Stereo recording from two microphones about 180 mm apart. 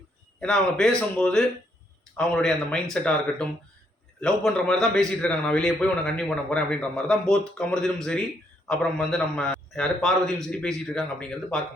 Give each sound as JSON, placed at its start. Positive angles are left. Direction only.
{"t": 0.3, "sound": "a man's voice", "side_deg": 5}